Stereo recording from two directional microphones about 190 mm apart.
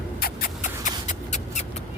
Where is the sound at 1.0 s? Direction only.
40° left (ahead or behind).